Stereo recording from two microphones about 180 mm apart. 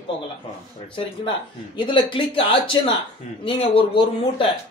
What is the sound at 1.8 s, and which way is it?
Speech, 25° left (ahead or behind).